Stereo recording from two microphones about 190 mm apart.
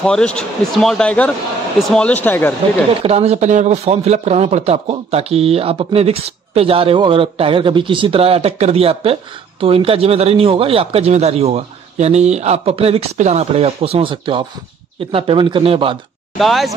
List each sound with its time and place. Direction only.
0.0 s speech: 5° left (ahead or behind)
3.0 s speech: 35° right (ahead or behind)
16.3 s speech: centre (ahead or behind)